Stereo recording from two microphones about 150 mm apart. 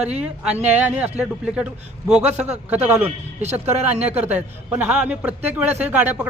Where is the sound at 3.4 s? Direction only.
50° right (ahead or behind).